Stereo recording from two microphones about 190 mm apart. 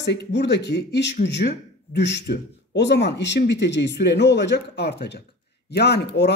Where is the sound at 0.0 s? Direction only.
65° left (ahead or behind).